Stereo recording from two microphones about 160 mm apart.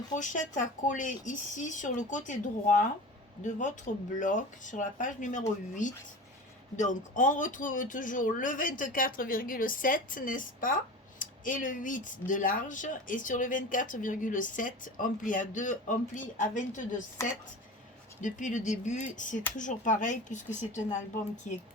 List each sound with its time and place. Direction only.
0.2 s speech: 50° left (ahead or behind)
18.2 s speech: 50° left (ahead or behind)